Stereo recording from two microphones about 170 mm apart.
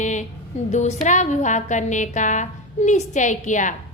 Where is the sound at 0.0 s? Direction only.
45° left (ahead or behind).